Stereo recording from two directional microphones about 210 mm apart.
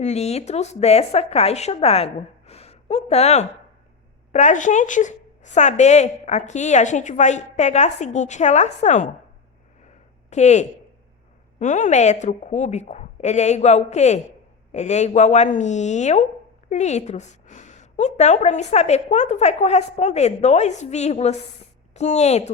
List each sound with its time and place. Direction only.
0.0 s speech: 30° left (ahead or behind)
2.5 s a sound: 30° left (ahead or behind)
4.3 s speech: 35° left (ahead or behind)
10.2 s speech: 30° left (ahead or behind)